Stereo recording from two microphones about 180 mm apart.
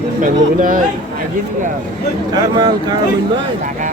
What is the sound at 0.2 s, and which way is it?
Speech, 50° right (ahead or behind).